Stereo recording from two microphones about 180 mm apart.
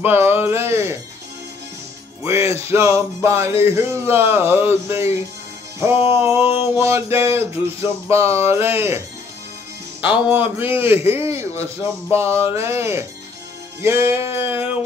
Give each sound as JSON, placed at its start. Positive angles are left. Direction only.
{"t": 0.0, "sound": "music", "side_deg": -10}
{"t": 2.2, "sound": "music", "side_deg": -15}
{"t": 5.9, "sound": "music", "side_deg": 30}
{"t": 6.5, "sound": "music", "side_deg": -10}
{"t": 10.0, "sound": "music", "side_deg": -10}